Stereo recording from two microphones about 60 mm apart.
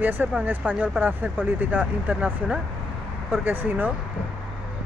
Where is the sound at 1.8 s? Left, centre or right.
Centre.